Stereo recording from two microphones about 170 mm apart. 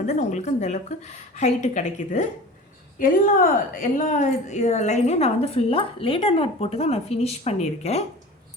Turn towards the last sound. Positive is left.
turn(degrees=40)  # may be behind; listen again after turning